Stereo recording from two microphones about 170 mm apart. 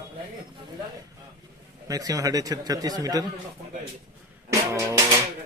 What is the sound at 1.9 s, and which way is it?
Speech, 20° right (ahead or behind).